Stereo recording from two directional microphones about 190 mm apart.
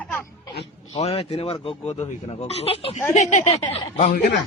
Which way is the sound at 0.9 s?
30° left (ahead or behind).